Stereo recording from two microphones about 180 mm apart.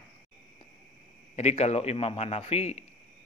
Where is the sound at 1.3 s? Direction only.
35° left (ahead or behind).